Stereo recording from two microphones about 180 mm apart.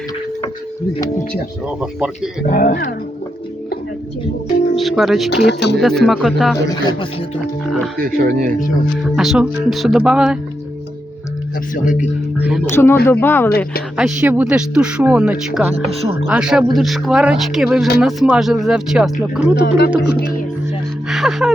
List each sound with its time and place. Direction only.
1.8 s speech: 5° right (ahead or behind)
2.5 s speech: 50° left (ahead or behind)
4.8 s speech: centre (ahead or behind)
5.5 s speech: 70° left (ahead or behind)
5.8 s speech: centre (ahead or behind)
6.7 s speech: 25° left (ahead or behind)
7.9 s speech: 55° right (ahead or behind)
9.1 s speech: 5° right (ahead or behind)
11.7 s speech: 45° left (ahead or behind)
12.4 s speech: 5° right (ahead or behind)
12.6 s speech: 15° left (ahead or behind)
13.9 s speech: 5° right (ahead or behind)
19.6 s music: 65° left (ahead or behind)
21.1 s music: centre (ahead or behind)